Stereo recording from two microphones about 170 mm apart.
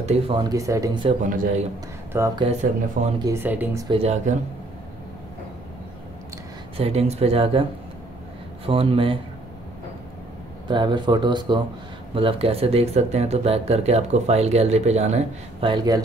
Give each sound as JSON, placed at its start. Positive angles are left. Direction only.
{"t": 0.0, "sound": "speech", "side_deg": -40}
{"t": 0.4, "sound": "speech", "side_deg": -20}
{"t": 1.2, "sound": "speech", "side_deg": -50}
{"t": 2.1, "sound": "speech", "side_deg": -20}
{"t": 2.6, "sound": "speech", "side_deg": -45}
{"t": 3.2, "sound": "speech", "side_deg": -15}
{"t": 3.9, "sound": "speech", "side_deg": -40}
{"t": 6.8, "sound": "speech", "side_deg": -35}
{"t": 8.6, "sound": "speech", "side_deg": -35}
{"t": 10.7, "sound": "speech", "side_deg": -25}